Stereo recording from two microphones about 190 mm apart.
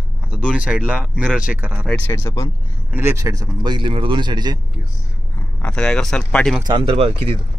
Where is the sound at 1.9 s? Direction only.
10° left (ahead or behind).